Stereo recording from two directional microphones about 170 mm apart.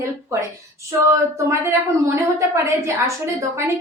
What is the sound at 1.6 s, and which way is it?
A woman's voice, 15° right (ahead or behind).